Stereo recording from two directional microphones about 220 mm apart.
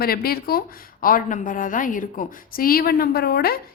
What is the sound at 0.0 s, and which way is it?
A woman's voice, 45° left (ahead or behind).